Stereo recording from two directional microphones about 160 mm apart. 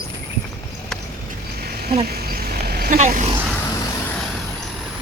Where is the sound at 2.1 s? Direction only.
75° right (ahead or behind).